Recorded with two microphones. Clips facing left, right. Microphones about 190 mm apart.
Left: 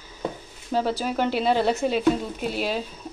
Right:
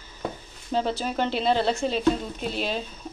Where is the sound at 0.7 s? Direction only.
10° left (ahead or behind).